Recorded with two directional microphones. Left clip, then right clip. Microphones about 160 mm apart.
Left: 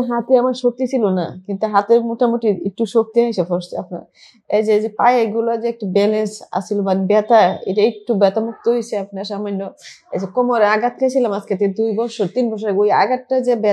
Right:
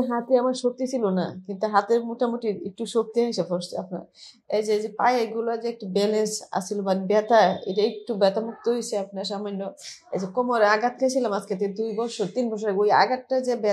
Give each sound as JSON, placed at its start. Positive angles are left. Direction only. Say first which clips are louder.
{"t": 0.0, "sound": "a woman's voice", "louder": "left 7 dB", "side_deg": 25}